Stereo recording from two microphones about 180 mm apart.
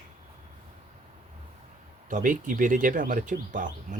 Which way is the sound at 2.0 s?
45° right (ahead or behind).